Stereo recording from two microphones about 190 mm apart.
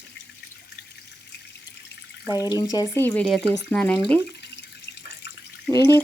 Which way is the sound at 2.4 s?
20° left (ahead or behind).